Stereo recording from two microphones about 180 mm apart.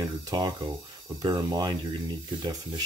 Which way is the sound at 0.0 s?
20° right (ahead or behind).